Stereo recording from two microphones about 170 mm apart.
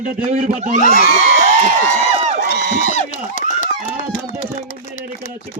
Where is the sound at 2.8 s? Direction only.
45° left (ahead or behind).